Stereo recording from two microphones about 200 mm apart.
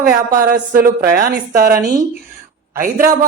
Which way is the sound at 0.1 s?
45° right (ahead or behind).